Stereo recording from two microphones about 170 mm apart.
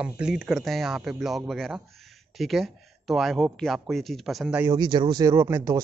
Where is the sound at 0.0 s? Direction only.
5° right (ahead or behind).